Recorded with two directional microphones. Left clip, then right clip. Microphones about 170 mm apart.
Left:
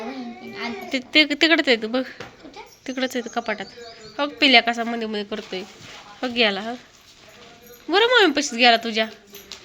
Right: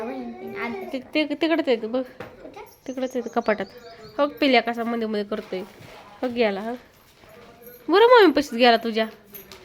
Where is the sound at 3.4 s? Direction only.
35° right (ahead or behind).